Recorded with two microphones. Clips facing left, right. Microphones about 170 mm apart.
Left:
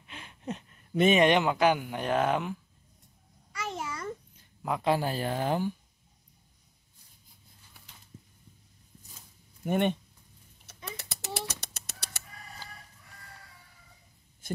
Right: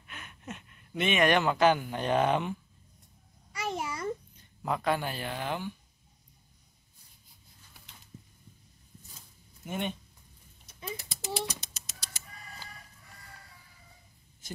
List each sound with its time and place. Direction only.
0.0 s gasp: 30° left (ahead or behind)
1.2 s speech: 15° left (ahead or behind)
3.5 s babbling: 15° right (ahead or behind)
4.8 s speech: 35° left (ahead or behind)
9.7 s speech: 60° left (ahead or behind)
10.9 s a sound: 70° left (ahead or behind)
14.4 s a sound: 55° left (ahead or behind)